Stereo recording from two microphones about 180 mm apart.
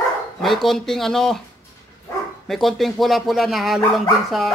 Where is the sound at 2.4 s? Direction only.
Centre (ahead or behind).